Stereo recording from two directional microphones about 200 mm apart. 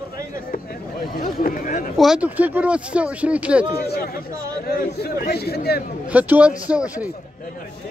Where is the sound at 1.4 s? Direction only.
40° left (ahead or behind).